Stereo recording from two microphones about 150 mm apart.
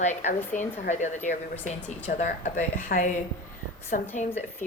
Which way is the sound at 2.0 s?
55° left (ahead or behind).